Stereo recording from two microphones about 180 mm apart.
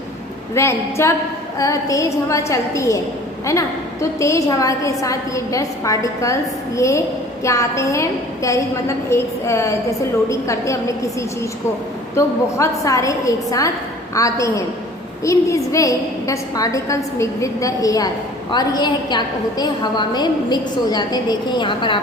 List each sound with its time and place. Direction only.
0.5 s a woman's voice: 15° left (ahead or behind)
12.1 s a woman's voice: 15° left (ahead or behind)